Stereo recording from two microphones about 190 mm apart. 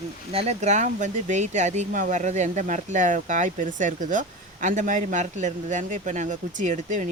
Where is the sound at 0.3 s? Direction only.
35° right (ahead or behind).